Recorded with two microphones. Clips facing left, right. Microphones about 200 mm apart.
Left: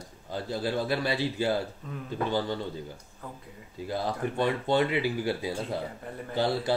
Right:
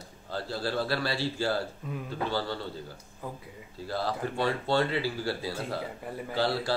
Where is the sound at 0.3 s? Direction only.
20° left (ahead or behind).